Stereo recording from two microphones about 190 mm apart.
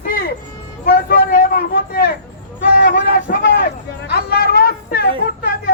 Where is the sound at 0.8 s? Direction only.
50° left (ahead or behind).